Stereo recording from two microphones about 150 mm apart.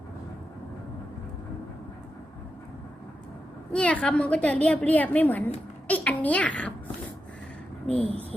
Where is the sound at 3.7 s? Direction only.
5° left (ahead or behind).